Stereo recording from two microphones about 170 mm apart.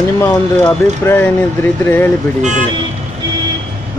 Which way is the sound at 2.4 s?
45° right (ahead or behind).